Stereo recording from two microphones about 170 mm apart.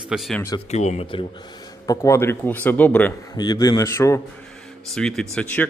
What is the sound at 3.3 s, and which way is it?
Speech, 25° left (ahead or behind).